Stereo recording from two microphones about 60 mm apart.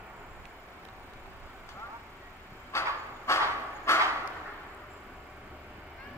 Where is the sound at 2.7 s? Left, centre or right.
Left.